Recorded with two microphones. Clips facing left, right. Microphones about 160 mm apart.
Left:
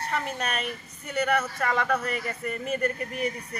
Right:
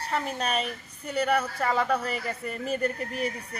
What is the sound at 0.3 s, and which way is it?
Speech, 30° right (ahead or behind).